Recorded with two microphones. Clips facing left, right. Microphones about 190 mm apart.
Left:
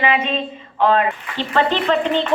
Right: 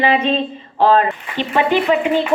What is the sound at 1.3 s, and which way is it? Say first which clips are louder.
Speech: right 3 dB; 15° right (ahead or behind).